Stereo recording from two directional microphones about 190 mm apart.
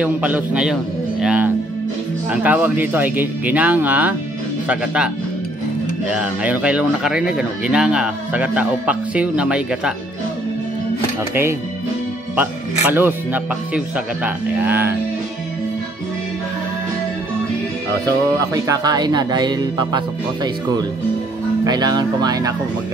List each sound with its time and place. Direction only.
0.0 s speech: 10° right (ahead or behind)
1.2 s music: 5° right (ahead or behind)
2.3 s speech: 10° right (ahead or behind)
12.4 s speech: 10° right (ahead or behind)
18.5 s speech: 20° right (ahead or behind)
21.6 s speech: 20° right (ahead or behind)